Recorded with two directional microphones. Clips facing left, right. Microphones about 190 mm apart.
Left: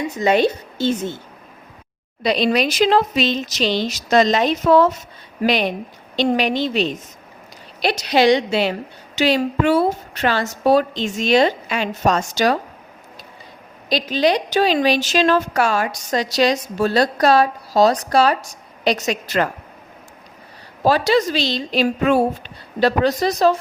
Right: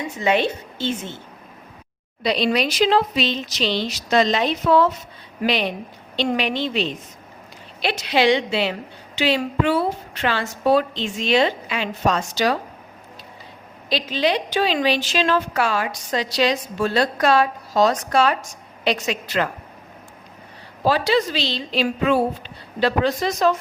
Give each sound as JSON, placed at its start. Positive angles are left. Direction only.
{"t": 0.2, "sound": "a woman's voice", "side_deg": 40}
{"t": 2.2, "sound": "a woman's voice", "side_deg": 45}
{"t": 13.9, "sound": "a woman's voice", "side_deg": 40}
{"t": 20.8, "sound": "a woman's voice", "side_deg": 45}